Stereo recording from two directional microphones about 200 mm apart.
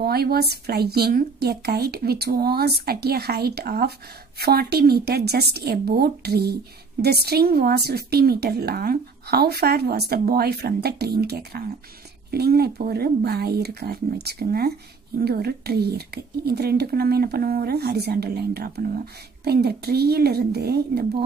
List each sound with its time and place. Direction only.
0.0 s a woman's voice: 50° right (ahead or behind)